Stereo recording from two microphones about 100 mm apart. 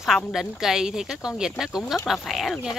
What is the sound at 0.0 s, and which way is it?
Speech, 5° right (ahead or behind).